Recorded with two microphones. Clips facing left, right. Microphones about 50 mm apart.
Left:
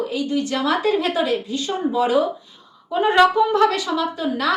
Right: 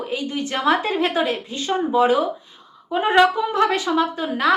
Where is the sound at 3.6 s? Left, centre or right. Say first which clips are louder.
Even; right.